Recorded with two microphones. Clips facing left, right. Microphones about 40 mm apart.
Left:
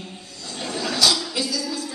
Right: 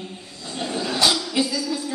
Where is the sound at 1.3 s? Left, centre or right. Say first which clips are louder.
Right 4 dB; right.